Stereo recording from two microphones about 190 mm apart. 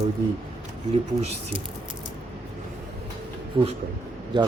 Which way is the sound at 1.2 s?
35° right (ahead or behind).